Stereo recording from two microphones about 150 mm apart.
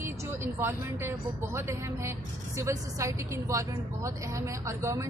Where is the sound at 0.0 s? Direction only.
15° right (ahead or behind).